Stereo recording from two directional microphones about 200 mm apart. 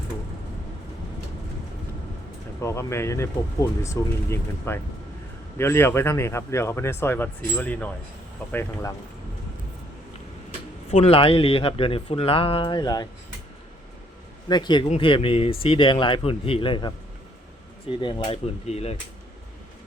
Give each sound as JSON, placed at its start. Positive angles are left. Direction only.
{"t": 2.6, "sound": "speech", "side_deg": 15}
{"t": 10.9, "sound": "speech", "side_deg": 30}
{"t": 14.4, "sound": "speech", "side_deg": 20}
{"t": 18.0, "sound": "speech", "side_deg": 25}